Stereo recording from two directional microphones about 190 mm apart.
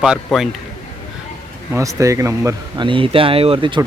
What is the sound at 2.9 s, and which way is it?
Speech, 30° right (ahead or behind).